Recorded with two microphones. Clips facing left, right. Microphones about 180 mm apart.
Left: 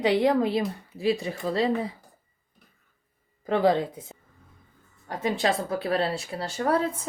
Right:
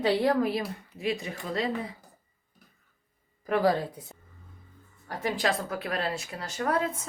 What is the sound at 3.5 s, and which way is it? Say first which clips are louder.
Speech: left 3 dB; 25° left (ahead or behind).